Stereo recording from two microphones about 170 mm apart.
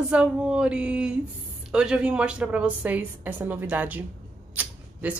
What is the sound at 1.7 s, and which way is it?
A woman's voice, 5° right (ahead or behind).